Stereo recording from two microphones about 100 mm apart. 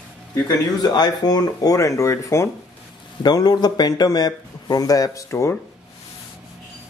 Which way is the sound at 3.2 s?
45° left (ahead or behind).